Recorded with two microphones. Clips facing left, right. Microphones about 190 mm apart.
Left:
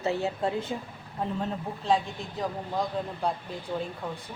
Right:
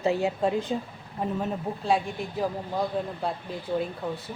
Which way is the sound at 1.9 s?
10° right (ahead or behind).